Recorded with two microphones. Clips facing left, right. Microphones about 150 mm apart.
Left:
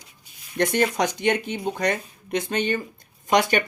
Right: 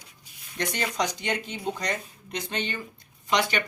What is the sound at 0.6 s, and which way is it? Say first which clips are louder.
Speech: left 7 dB; 50° left (ahead or behind).